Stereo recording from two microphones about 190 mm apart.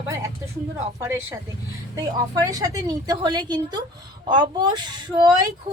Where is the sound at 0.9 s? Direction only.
15° right (ahead or behind).